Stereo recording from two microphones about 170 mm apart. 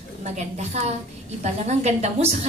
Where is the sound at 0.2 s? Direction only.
40° right (ahead or behind).